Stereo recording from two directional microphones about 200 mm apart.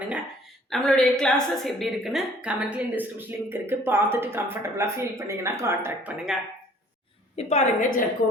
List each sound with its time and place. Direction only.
0.7 s a woman's voice: 5° left (ahead or behind)
7.3 s a woman's voice: 35° left (ahead or behind)